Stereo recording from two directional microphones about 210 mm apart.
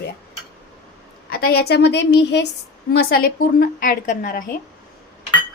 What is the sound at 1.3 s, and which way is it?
A woman's voice, 45° left (ahead or behind).